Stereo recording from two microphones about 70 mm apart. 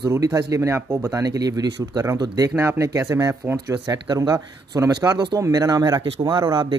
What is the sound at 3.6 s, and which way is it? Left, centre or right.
Speech, right.